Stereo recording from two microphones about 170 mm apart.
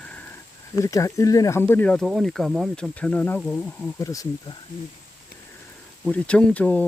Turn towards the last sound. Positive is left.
turn(degrees=10)  # may be behind; listen again after turning